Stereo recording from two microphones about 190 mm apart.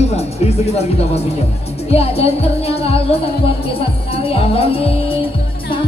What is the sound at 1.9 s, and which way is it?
Music, 30° left (ahead or behind).